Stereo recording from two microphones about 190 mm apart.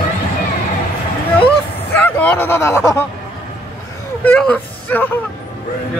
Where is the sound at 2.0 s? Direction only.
10° left (ahead or behind).